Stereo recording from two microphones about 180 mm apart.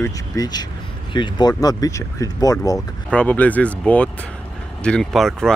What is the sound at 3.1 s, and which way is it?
Speech, 5° left (ahead or behind).